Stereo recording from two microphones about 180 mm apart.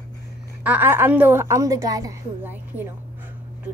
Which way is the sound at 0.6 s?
10° right (ahead or behind).